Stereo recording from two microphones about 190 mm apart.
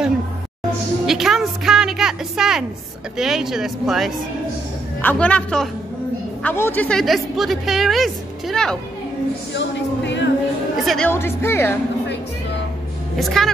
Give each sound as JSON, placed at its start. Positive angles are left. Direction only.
{"t": 1.0, "sound": "a woman's voice", "side_deg": 0}
{"t": 9.5, "sound": "speech", "side_deg": 70}
{"t": 10.9, "sound": "a woman's voice", "side_deg": 10}
{"t": 13.2, "sound": "a woman's voice", "side_deg": 0}